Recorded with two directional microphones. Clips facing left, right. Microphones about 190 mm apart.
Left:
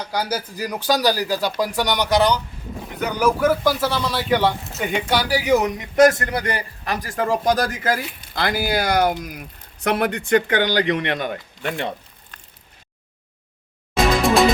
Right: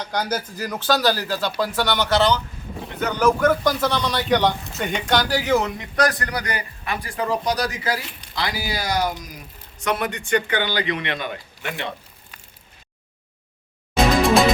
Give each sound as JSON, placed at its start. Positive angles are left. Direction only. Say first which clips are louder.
{"t": 0.0, "sound": "speech", "louder": "even", "side_deg": 10}
{"t": 10.7, "sound": "speech", "louder": "left 4 dB", "side_deg": 45}
{"t": 12.3, "sound": "a sound", "louder": "left 1 dB", "side_deg": -10}